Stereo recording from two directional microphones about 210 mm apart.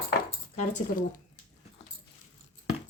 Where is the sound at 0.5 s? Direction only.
40° left (ahead or behind).